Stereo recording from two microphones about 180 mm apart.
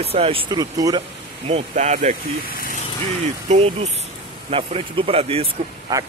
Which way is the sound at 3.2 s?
40° right (ahead or behind).